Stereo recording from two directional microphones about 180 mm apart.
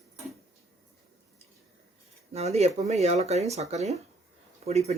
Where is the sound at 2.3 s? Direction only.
35° right (ahead or behind).